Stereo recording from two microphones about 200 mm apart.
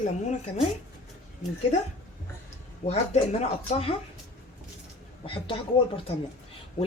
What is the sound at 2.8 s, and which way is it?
Speech, 35° left (ahead or behind).